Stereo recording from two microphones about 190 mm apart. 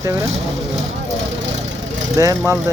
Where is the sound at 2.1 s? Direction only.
15° right (ahead or behind).